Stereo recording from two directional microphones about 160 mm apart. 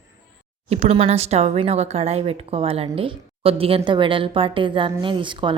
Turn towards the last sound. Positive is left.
turn(degrees=-30)  # may be behind; listen again after turning